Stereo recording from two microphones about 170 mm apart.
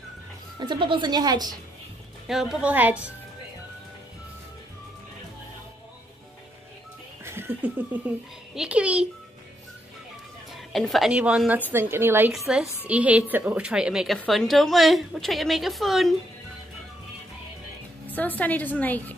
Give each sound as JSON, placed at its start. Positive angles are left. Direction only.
{"t": 0.6, "sound": "speech", "side_deg": -25}
{"t": 2.2, "sound": "a woman's voice", "side_deg": 0}
{"t": 7.2, "sound": "a sound", "side_deg": -15}
{"t": 8.5, "sound": "a woman's voice", "side_deg": -5}
{"t": 10.7, "sound": "a woman's voice", "side_deg": 0}
{"t": 18.0, "sound": "a woman's voice", "side_deg": 10}